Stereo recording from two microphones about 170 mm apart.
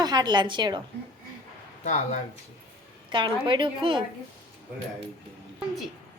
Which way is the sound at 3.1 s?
30° right (ahead or behind).